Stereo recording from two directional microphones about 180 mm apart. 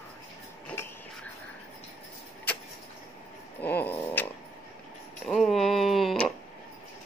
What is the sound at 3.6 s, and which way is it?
Dog, 10° left (ahead or behind).